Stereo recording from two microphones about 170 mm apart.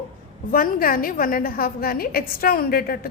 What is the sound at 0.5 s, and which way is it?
A woman's voice, 55° left (ahead or behind).